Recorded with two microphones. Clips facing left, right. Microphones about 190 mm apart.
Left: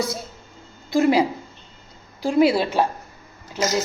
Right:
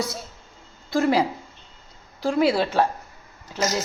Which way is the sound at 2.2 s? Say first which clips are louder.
Left 3 dB; 15° left (ahead or behind).